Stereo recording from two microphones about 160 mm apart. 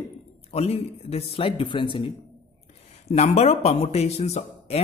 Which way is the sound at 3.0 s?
45° left (ahead or behind).